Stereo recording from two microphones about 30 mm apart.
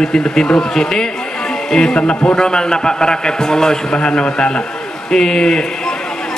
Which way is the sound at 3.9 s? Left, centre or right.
Left.